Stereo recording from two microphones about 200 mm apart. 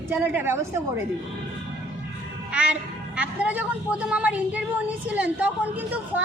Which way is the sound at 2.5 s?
5° right (ahead or behind).